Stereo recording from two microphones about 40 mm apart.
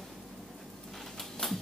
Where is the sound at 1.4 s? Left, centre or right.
Centre.